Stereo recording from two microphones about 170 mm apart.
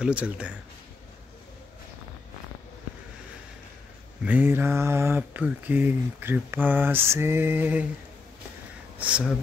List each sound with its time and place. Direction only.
0.0 s mantra: 5° right (ahead or behind)
4.2 s mantra: 10° right (ahead or behind)
8.9 s speech: 5° right (ahead or behind)